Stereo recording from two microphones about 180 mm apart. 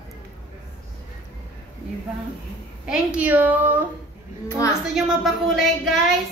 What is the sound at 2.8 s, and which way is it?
A woman's voice, 5° right (ahead or behind).